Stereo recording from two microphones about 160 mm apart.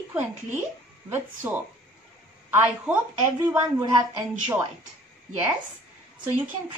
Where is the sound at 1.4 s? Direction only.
15° right (ahead or behind).